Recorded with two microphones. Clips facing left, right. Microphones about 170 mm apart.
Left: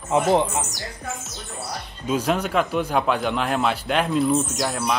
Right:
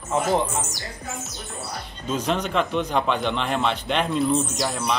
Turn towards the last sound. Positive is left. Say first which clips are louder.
# left 1 dB
turn(degrees=0)  # may be behind; listen again after turning